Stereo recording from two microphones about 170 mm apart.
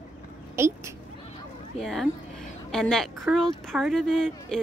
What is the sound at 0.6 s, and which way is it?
Speech, 15° right (ahead or behind).